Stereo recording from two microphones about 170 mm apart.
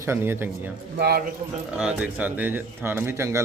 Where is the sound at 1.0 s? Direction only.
70° right (ahead or behind).